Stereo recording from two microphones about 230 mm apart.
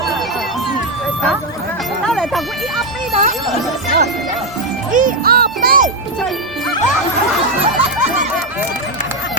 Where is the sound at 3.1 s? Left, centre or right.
Right.